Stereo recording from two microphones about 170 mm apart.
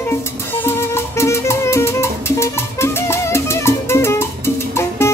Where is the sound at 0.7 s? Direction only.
15° left (ahead or behind).